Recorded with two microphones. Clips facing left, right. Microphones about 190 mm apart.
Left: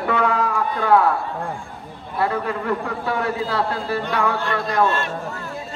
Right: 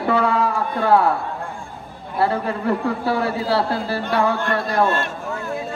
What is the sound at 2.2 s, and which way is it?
A man's voice, 30° right (ahead or behind).